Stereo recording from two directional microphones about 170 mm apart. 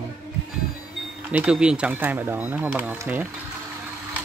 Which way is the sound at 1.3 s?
5° right (ahead or behind).